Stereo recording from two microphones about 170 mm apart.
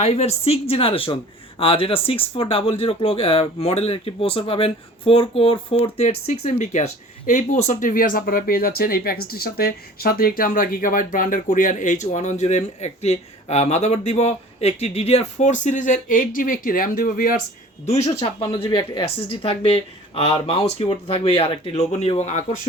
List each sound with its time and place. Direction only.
0.0 s speech: 40° left (ahead or behind); by 17.3 s 60° left (ahead or behind)
17.8 s speech: 40° left (ahead or behind)